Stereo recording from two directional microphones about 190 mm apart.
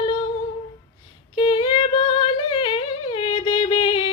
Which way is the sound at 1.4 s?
25° left (ahead or behind).